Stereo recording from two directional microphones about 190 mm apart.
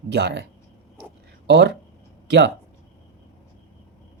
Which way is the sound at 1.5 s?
65° right (ahead or behind).